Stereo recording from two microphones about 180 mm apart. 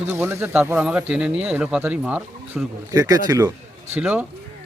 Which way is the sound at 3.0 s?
20° right (ahead or behind).